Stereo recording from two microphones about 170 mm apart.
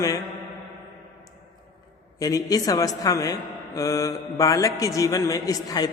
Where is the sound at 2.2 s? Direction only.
20° left (ahead or behind).